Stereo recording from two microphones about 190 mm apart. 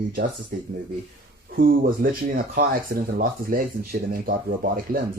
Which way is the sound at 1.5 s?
50° right (ahead or behind).